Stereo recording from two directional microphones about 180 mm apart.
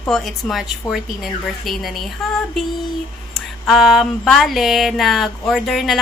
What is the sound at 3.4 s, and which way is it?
A woman's voice, centre (ahead or behind).